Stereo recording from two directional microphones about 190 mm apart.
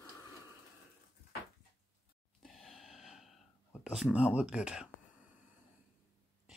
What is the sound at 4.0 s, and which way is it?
Speech, 5° right (ahead or behind).